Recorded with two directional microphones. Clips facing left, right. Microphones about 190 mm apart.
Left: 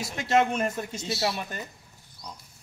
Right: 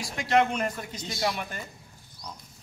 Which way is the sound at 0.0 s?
25° left (ahead or behind).